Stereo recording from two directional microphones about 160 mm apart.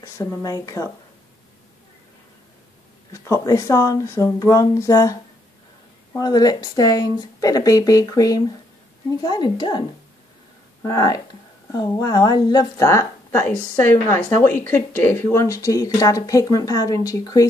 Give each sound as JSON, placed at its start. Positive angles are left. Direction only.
{"t": 0.0, "sound": "speech", "side_deg": 20}
{"t": 3.1, "sound": "speech", "side_deg": 20}